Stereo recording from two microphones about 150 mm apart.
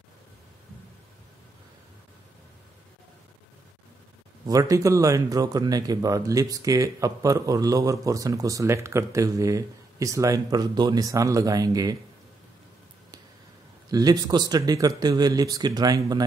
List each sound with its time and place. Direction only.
4.5 s speech: 20° right (ahead or behind)
13.8 s speech: 25° right (ahead or behind)